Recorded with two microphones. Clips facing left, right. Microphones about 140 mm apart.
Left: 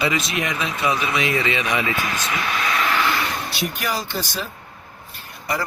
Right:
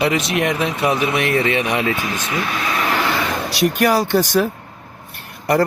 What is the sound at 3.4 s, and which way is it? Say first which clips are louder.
Speech: right 10 dB; 75° right (ahead or behind).